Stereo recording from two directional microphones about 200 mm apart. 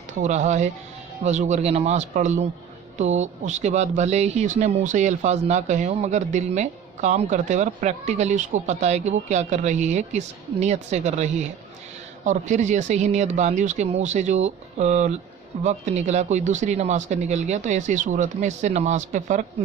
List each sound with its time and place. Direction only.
0.1 s speech: 35° right (ahead or behind)